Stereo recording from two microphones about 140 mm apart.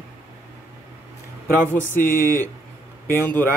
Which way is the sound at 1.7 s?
15° left (ahead or behind).